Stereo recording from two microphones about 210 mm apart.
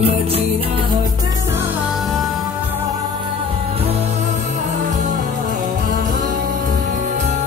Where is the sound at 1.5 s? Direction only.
5° right (ahead or behind).